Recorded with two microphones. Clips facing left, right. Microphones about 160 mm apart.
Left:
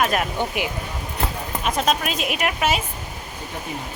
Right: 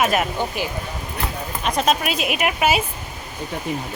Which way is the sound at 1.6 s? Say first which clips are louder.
Right 2 dB; centre (ahead or behind).